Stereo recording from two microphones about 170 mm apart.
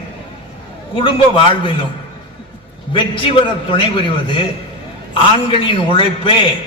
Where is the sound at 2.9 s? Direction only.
30° left (ahead or behind).